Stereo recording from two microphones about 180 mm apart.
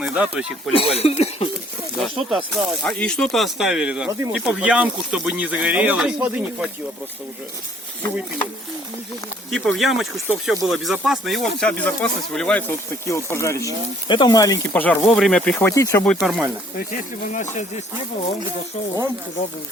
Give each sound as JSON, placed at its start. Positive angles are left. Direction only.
{"t": 0.0, "sound": "speech", "side_deg": -5}
{"t": 0.7, "sound": "speech", "side_deg": 30}
{"t": 2.0, "sound": "speech", "side_deg": 0}
{"t": 9.6, "sound": "speech", "side_deg": 0}
{"t": 14.7, "sound": "speech", "side_deg": 5}
{"t": 16.2, "sound": "speech", "side_deg": 0}
{"t": 16.7, "sound": "speech", "side_deg": 45}